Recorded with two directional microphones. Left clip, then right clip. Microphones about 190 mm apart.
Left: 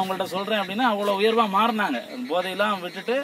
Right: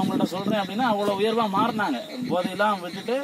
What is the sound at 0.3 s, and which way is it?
A man's voice, 15° left (ahead or behind).